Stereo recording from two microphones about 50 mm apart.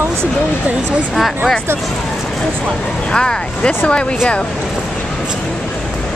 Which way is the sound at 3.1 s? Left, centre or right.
Centre.